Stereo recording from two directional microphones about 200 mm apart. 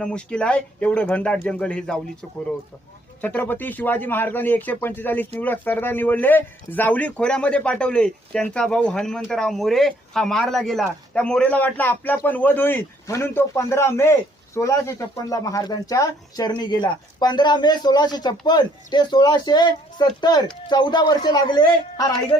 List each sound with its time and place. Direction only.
0.0 s speech: 5° left (ahead or behind)
3.2 s a man's voice: 10° left (ahead or behind)